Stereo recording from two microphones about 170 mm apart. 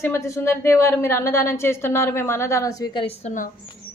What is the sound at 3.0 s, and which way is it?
Speech, 45° left (ahead or behind).